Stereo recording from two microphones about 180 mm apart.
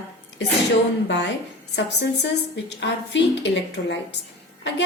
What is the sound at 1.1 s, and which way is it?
Speech, 75° left (ahead or behind).